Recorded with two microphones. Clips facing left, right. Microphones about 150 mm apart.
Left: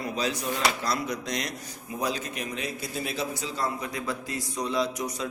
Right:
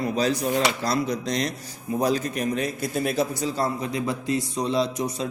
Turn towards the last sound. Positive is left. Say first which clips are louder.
# right 4 dB
turn(degrees=-25)  # may be behind; listen again after turning